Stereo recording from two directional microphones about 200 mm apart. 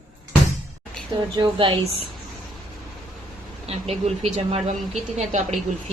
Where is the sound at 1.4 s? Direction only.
25° right (ahead or behind).